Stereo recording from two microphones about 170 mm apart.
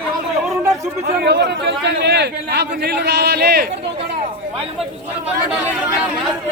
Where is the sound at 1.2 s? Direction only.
75° right (ahead or behind).